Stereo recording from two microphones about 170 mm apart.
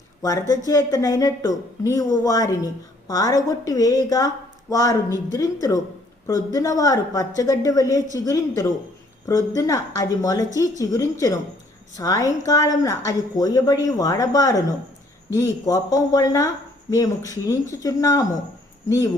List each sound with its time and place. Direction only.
0.2 s speech: 20° left (ahead or behind)